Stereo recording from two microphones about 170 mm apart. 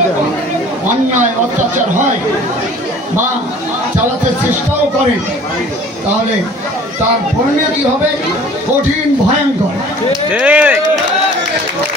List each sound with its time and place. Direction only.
1.1 s speech: 45° right (ahead or behind)
10.3 s speech: 10° right (ahead or behind)